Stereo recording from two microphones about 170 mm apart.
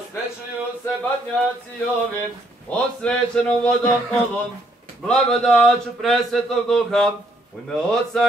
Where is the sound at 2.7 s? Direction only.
5° left (ahead or behind).